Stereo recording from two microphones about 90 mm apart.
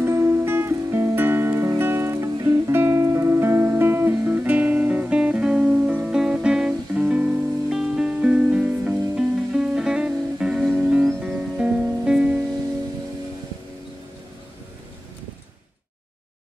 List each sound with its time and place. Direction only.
0.0 s music: 30° right (ahead or behind); by 12.4 s 10° right (ahead or behind)